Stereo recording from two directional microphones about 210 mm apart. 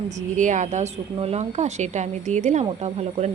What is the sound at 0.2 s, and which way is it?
Speech, 35° right (ahead or behind).